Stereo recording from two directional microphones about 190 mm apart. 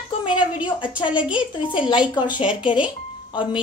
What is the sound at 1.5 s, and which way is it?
A woman's voice, 25° left (ahead or behind).